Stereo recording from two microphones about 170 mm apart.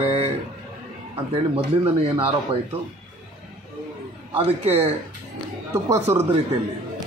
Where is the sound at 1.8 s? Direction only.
35° right (ahead or behind).